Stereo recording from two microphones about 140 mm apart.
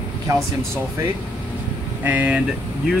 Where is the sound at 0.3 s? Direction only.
20° right (ahead or behind).